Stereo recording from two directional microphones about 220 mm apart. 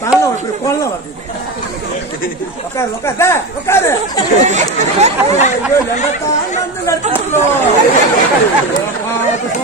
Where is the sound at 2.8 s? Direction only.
10° left (ahead or behind).